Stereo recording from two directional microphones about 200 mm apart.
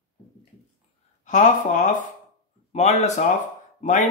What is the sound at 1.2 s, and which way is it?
Speech, 40° left (ahead or behind).